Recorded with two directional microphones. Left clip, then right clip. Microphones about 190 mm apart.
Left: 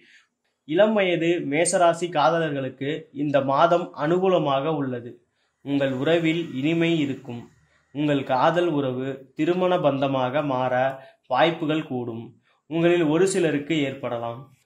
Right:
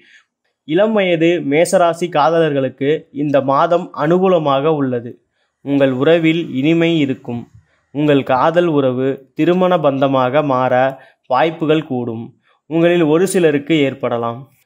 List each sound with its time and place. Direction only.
0.7 s a man's voice: 50° right (ahead or behind)